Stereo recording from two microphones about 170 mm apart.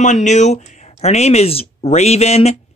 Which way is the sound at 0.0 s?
45° left (ahead or behind).